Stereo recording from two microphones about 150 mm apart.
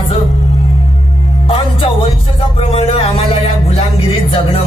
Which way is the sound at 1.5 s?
35° left (ahead or behind).